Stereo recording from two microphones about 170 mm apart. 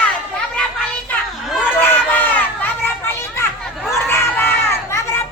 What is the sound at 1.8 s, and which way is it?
Run, 10° left (ahead or behind).